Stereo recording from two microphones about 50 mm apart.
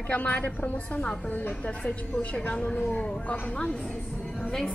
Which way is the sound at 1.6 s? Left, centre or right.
Left.